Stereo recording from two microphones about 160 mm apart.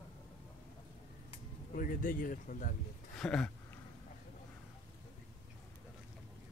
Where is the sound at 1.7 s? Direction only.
60° left (ahead or behind).